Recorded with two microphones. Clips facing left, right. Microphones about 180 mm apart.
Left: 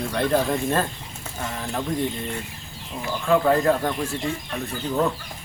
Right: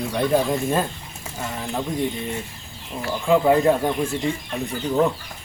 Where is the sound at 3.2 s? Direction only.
15° right (ahead or behind).